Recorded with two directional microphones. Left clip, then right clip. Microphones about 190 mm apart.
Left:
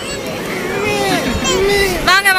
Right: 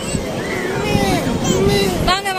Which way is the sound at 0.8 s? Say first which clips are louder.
Left 3 dB; 30° left (ahead or behind).